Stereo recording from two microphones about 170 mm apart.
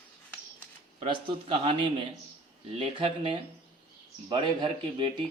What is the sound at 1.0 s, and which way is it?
A man's voice, 30° right (ahead or behind).